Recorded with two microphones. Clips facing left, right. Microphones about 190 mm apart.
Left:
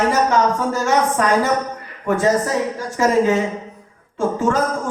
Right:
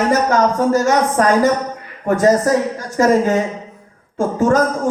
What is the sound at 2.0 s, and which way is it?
A woman's voice, 40° right (ahead or behind).